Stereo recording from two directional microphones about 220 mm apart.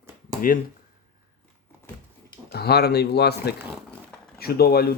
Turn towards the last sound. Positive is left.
turn(degrees=45)  # may be behind; listen again after turning